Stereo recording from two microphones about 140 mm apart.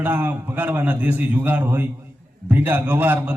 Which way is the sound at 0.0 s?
15° right (ahead or behind).